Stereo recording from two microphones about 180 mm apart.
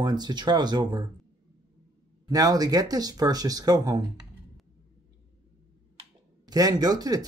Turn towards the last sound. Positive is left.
turn(degrees=-20)  # may be behind; listen again after turning